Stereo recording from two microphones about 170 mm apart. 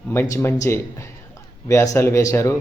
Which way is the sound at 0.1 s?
15° left (ahead or behind).